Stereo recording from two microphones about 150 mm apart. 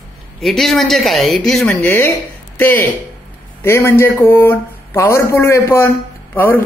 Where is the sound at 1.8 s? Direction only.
15° left (ahead or behind).